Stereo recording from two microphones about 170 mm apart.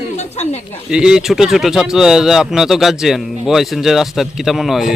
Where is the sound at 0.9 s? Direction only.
5° right (ahead or behind).